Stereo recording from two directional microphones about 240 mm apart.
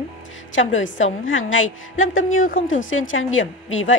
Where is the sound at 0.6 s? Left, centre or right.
Left.